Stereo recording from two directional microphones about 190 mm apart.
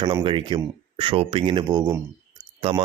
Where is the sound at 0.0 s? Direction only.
25° right (ahead or behind).